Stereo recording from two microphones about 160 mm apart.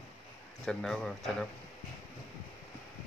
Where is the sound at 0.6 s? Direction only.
5° left (ahead or behind).